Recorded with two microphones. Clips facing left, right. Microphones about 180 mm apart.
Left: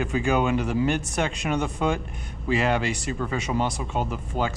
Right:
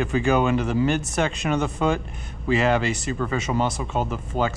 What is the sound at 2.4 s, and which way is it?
Speech, 10° left (ahead or behind).